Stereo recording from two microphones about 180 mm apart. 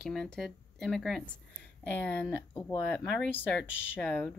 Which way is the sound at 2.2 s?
20° left (ahead or behind).